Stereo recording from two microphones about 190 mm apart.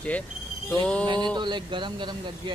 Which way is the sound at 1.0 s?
25° right (ahead or behind).